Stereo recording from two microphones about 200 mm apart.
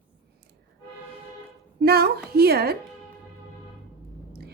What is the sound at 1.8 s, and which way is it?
Speech, 50° right (ahead or behind).